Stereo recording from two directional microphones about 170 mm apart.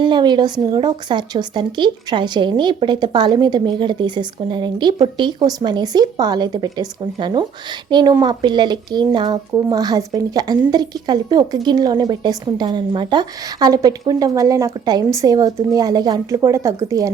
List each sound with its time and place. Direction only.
0.0 s speech: 25° right (ahead or behind)